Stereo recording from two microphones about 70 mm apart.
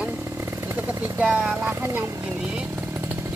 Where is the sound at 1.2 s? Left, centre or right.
Centre.